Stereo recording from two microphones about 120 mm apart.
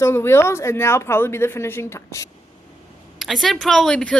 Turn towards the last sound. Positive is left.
turn(degrees=10)  # may be behind; listen again after turning